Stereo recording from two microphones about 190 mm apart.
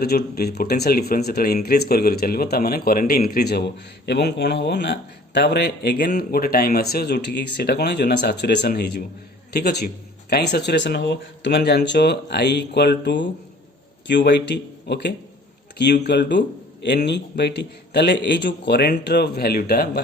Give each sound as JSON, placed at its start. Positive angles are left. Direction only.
{"t": 0.0, "sound": "speech", "side_deg": 55}